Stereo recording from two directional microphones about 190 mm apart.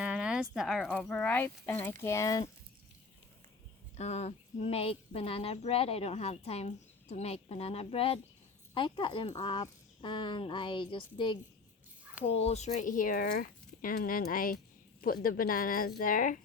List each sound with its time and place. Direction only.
0.0 s a sound: 5° right (ahead or behind)
0.5 s speech: centre (ahead or behind); by 2.4 s 15° left (ahead or behind)
3.9 s a woman's voice: 35° left (ahead or behind)